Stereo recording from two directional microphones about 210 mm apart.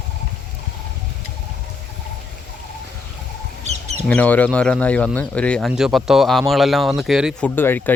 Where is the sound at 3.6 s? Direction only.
30° right (ahead or behind).